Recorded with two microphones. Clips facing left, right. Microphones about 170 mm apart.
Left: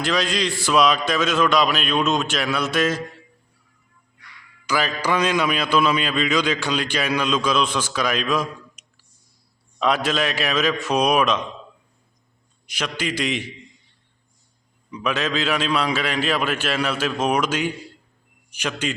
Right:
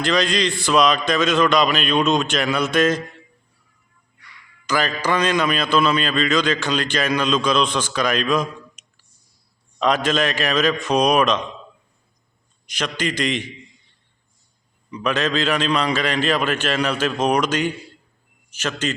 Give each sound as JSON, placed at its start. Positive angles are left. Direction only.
{"t": 0.0, "sound": "a man's voice", "side_deg": 5}
{"t": 4.6, "sound": "a man's voice", "side_deg": 10}
{"t": 12.6, "sound": "a man's voice", "side_deg": 10}
{"t": 14.8, "sound": "a man's voice", "side_deg": 5}